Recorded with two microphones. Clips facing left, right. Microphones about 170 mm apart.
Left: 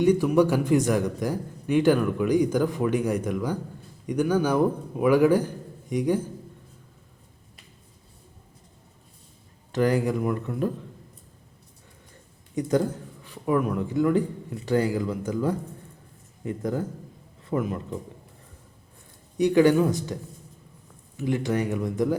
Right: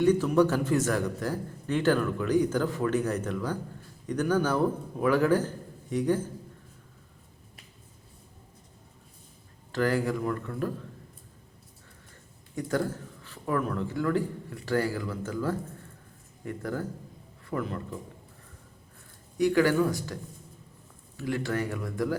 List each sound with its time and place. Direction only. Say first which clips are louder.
0.0 s a man's voice: left 3 dB; 15° left (ahead or behind)
9.7 s a man's voice: left 4 dB; 20° left (ahead or behind)
12.5 s a man's voice: left 5 dB; 20° left (ahead or behind)
19.4 s speech: left 4 dB; 20° left (ahead or behind)
21.2 s speech: left 4 dB; 20° left (ahead or behind)